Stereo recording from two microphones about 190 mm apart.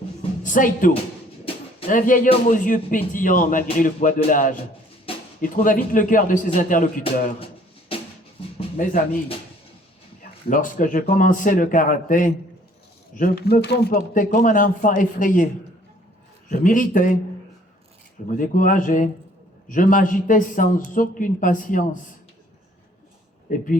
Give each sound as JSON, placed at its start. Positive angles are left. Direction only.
{"t": 0.4, "sound": "a man's voice", "side_deg": 45}
{"t": 7.0, "sound": "a sound", "side_deg": 30}
{"t": 8.8, "sound": "a man's voice", "side_deg": 45}
{"t": 10.5, "sound": "a man's voice", "side_deg": 45}
{"t": 14.1, "sound": "a man's voice", "side_deg": 45}
{"t": 16.5, "sound": "a man's voice", "side_deg": 45}
{"t": 18.3, "sound": "a man's voice", "side_deg": 45}
{"t": 23.5, "sound": "a man's voice", "side_deg": 45}